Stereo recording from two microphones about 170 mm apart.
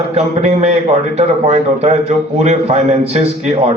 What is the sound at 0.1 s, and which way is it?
A man's voice, 40° right (ahead or behind).